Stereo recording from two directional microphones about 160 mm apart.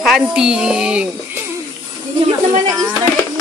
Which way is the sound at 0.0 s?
Centre (ahead or behind).